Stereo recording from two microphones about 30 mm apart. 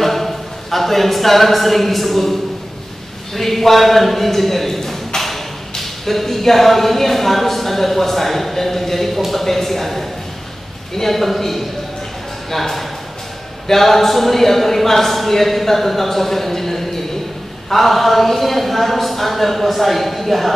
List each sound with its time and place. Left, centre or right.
0.0 s speech: centre
3.3 s a man's voice: centre